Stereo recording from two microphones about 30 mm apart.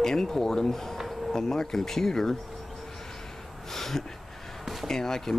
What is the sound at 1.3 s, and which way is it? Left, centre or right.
Speech, centre.